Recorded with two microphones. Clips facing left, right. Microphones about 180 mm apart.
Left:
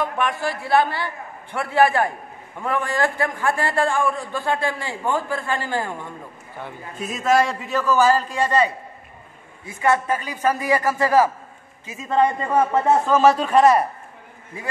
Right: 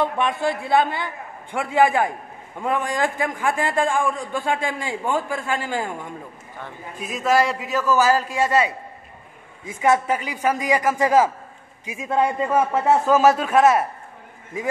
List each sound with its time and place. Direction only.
0.0 s a man's voice: 20° right (ahead or behind)
7.0 s a man's voice: centre (ahead or behind)
9.8 s a man's voice: 10° right (ahead or behind)